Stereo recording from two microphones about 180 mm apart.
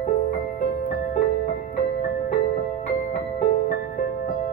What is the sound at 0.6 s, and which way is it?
Music, 55° left (ahead or behind).